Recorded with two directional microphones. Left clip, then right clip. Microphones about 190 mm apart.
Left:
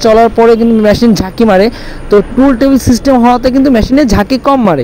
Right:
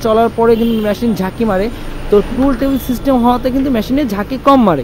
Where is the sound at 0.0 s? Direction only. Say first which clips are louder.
Left 6 dB; 35° left (ahead or behind).